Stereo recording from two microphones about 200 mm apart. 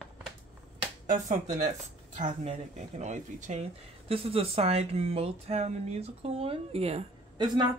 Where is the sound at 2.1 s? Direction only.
35° right (ahead or behind).